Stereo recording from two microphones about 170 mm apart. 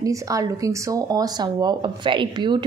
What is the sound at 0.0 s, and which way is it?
A woman's voice, 20° right (ahead or behind).